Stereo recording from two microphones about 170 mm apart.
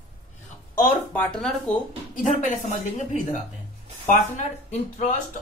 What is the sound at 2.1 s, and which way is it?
Speech, 50° left (ahead or behind).